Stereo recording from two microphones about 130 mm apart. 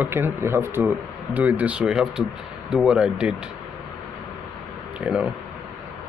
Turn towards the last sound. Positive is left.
turn(degrees=-10)  # may be behind; listen again after turning